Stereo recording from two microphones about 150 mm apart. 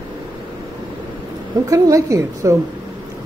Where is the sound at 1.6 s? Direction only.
20° right (ahead or behind).